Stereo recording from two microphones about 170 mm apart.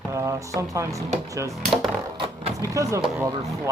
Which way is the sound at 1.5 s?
Centre (ahead or behind).